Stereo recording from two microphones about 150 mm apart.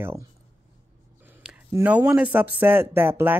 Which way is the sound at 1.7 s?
10° right (ahead or behind).